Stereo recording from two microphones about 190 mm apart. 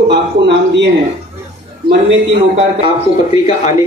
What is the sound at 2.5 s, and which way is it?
A man's voice, 25° right (ahead or behind).